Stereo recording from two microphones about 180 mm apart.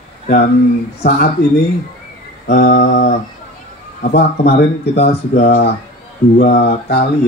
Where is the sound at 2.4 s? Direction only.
55° left (ahead or behind).